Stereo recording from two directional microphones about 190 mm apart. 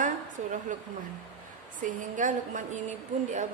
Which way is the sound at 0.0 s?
45° right (ahead or behind).